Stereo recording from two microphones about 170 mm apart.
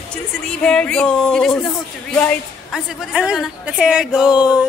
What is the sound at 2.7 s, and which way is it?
A woman's voice, 5° right (ahead or behind).